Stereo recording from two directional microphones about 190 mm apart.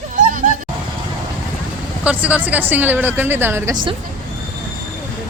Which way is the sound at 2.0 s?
5° right (ahead or behind).